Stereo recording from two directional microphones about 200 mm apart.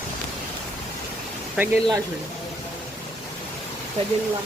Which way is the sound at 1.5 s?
5° right (ahead or behind).